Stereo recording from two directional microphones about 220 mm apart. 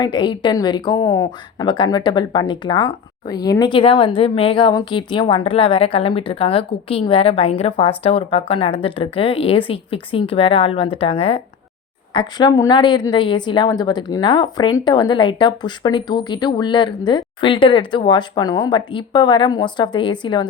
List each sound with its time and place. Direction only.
0.0 s a woman's voice: 20° left (ahead or behind)